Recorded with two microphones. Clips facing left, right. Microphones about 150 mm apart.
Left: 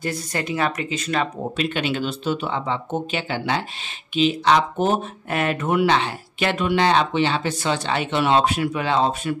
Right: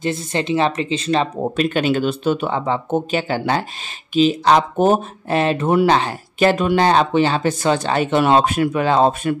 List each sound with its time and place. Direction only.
0.0 s speech: 25° right (ahead or behind)
1.6 s speech: 45° right (ahead or behind)
5.3 s speech: 30° right (ahead or behind); by 9.3 s 45° right (ahead or behind)